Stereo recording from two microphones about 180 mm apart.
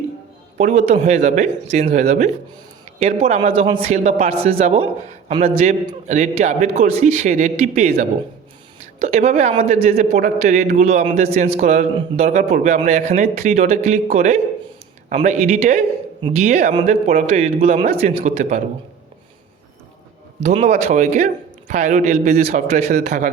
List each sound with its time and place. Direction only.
0.7 s a man's voice: 40° right (ahead or behind)
20.4 s a man's voice: 40° right (ahead or behind)